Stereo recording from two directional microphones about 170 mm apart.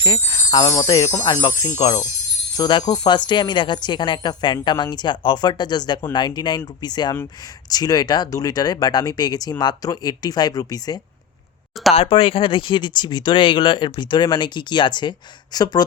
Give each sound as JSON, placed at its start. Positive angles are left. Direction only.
{"t": 0.0, "sound": "speech", "side_deg": 25}